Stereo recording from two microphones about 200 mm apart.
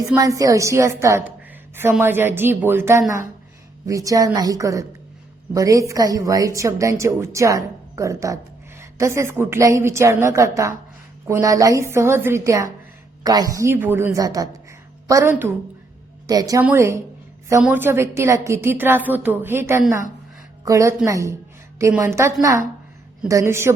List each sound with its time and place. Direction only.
0.2 s a woman's voice: 15° right (ahead or behind)